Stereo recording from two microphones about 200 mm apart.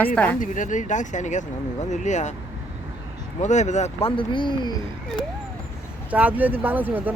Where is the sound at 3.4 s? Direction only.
35° left (ahead or behind).